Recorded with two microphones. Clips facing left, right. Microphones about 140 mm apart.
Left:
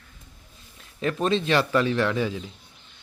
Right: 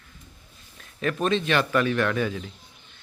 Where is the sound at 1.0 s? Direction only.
25° left (ahead or behind).